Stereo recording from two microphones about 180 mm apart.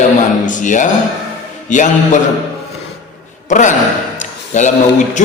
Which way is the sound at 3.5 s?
45° left (ahead or behind).